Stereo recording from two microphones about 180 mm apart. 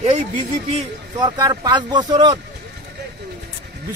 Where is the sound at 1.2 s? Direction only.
25° right (ahead or behind).